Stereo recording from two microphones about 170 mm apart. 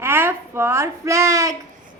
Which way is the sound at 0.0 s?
15° right (ahead or behind).